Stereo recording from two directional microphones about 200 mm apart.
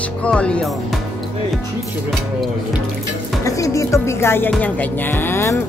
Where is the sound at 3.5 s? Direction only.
15° left (ahead or behind).